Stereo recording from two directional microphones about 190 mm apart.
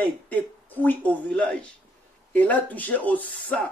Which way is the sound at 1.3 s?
5° left (ahead or behind).